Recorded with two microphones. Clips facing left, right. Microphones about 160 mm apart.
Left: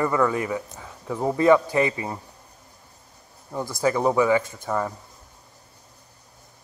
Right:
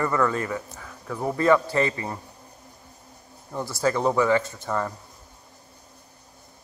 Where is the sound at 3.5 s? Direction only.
15° left (ahead or behind).